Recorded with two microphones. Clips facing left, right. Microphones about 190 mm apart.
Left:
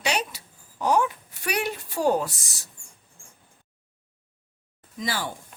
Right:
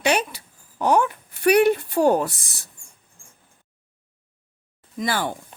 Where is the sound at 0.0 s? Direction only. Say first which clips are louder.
Right 6 dB; 55° right (ahead or behind).